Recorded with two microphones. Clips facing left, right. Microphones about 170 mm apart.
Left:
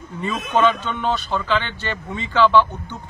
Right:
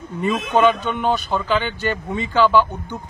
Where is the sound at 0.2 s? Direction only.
15° right (ahead or behind).